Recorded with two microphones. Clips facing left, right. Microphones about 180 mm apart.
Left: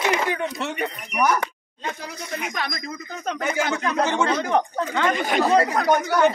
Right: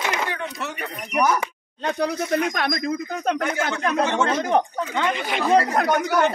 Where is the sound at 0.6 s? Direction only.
25° left (ahead or behind).